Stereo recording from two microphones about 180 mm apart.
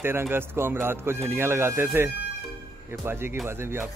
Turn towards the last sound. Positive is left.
turn(degrees=-15)  # may be behind; listen again after turning